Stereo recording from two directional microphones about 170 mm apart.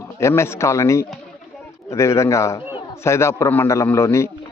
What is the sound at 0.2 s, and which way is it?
A man's voice, 15° left (ahead or behind).